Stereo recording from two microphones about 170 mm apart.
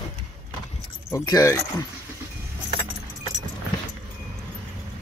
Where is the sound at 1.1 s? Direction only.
20° left (ahead or behind).